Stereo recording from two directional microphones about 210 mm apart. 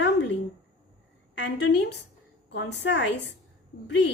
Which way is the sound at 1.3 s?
55° left (ahead or behind).